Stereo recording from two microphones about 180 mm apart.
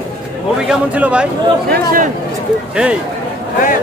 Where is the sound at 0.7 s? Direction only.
5° right (ahead or behind).